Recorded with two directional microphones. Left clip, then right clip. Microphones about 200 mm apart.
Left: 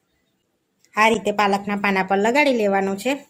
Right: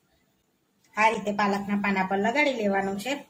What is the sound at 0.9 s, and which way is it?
A woman's voice, 45° left (ahead or behind).